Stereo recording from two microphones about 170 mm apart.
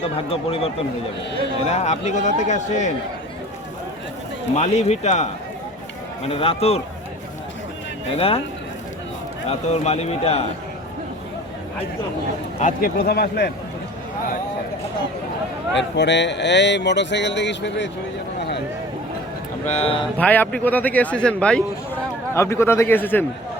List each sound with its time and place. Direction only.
0.0 s a man's voice: 35° left (ahead or behind)
1.7 s a man's voice: 40° left (ahead or behind)
4.5 s a man's voice: 40° left (ahead or behind)
9.5 s a man's voice: 40° left (ahead or behind)
12.5 s speech: 55° left (ahead or behind); by 13.5 s 70° left (ahead or behind)
15.7 s speech: 90° left
19.6 s a man's voice: 40° left (ahead or behind)
20.1 s a man's voice: 10° left (ahead or behind)